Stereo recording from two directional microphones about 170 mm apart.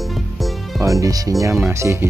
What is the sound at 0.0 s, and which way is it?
Music, centre (ahead or behind).